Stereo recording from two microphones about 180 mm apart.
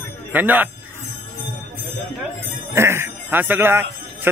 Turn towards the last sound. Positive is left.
turn(degrees=-10)  # may be behind; listen again after turning